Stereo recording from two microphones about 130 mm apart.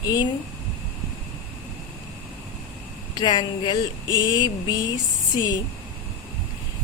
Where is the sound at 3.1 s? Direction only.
35° left (ahead or behind).